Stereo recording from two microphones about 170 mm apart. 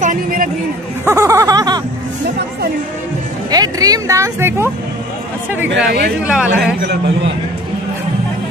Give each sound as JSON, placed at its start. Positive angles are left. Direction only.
{"t": 0.0, "sound": "a man's voice", "side_deg": -55}
{"t": 1.0, "sound": "a sound", "side_deg": -15}
{"t": 3.4, "sound": "speech", "side_deg": -20}
{"t": 5.8, "sound": "speech", "side_deg": -5}